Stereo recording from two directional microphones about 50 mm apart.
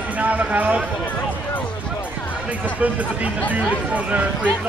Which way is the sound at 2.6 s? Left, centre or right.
Right.